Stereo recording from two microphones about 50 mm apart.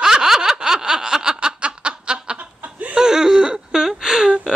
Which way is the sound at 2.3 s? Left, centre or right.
Right.